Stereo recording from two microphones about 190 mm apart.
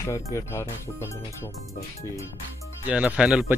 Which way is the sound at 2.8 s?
5° right (ahead or behind).